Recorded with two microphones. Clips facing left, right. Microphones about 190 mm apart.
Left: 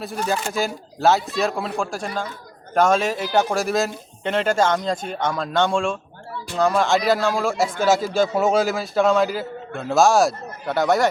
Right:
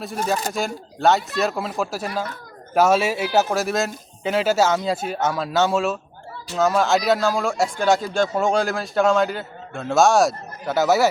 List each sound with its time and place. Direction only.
0.0 s speech: centre (ahead or behind)